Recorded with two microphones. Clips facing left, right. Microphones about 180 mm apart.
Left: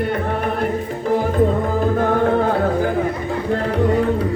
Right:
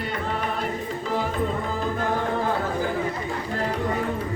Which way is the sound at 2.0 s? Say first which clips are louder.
Left 9 dB; 55° left (ahead or behind).